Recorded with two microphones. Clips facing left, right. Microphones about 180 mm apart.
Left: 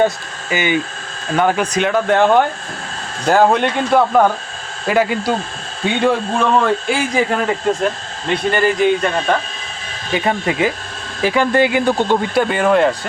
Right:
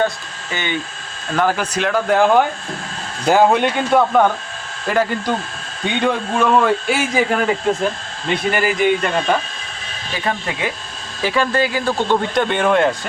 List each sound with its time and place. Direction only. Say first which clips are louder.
0.5 s speech: left 6 dB; 10° left (ahead or behind)
1.4 s a man's voice: left 3 dB; centre (ahead or behind)
10.2 s speech: left 6 dB; 20° left (ahead or behind); by 12.9 s 5° left (ahead or behind)